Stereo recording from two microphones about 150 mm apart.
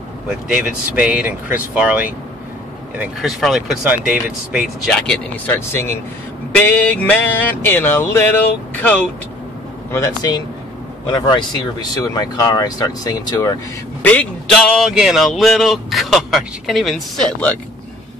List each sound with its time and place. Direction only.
0.3 s speech: 5° right (ahead or behind); by 13.6 s 25° left (ahead or behind)
14.0 s speech: 10° left (ahead or behind)